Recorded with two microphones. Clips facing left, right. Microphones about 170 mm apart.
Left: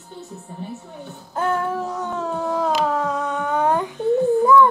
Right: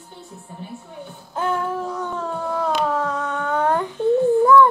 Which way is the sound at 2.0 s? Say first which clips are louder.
Left 2 dB; 20° left (ahead or behind).